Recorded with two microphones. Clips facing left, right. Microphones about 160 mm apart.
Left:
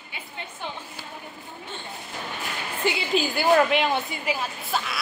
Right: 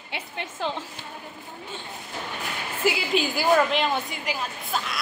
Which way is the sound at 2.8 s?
Centre (ahead or behind).